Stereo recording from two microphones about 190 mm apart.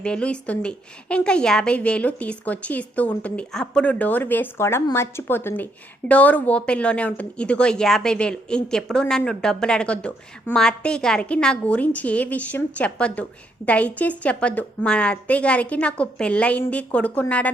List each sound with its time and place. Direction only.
0.0 s a woman's voice: 5° left (ahead or behind)